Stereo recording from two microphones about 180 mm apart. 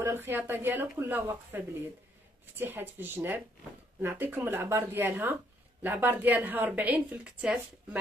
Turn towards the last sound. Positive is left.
turn(degrees=-5)  # may be behind; listen again after turning